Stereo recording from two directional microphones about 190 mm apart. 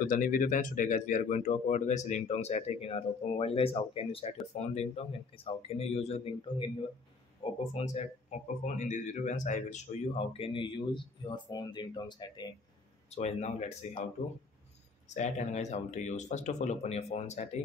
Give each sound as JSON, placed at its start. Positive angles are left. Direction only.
{"t": 0.0, "sound": "speech", "side_deg": 45}
{"t": 7.7, "sound": "speech", "side_deg": 35}
{"t": 13.1, "sound": "speech", "side_deg": 35}
{"t": 15.1, "sound": "speech", "side_deg": 40}